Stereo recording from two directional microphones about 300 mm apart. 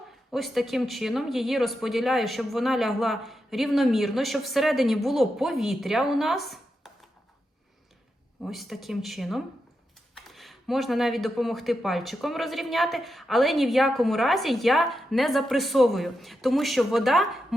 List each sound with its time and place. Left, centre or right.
0.3 s speech: centre
8.4 s speech: centre